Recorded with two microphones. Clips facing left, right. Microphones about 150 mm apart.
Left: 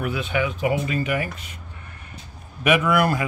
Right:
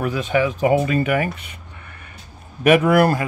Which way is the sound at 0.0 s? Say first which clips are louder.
Right 5 dB; 40° right (ahead or behind).